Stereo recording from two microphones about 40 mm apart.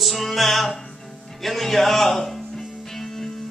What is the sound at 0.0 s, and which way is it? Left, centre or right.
Music, centre.